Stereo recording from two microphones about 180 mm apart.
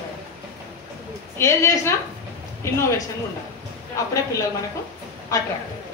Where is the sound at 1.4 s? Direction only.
15° left (ahead or behind).